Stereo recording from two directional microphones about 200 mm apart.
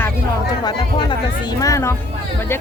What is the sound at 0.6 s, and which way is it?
Speech, 20° left (ahead or behind).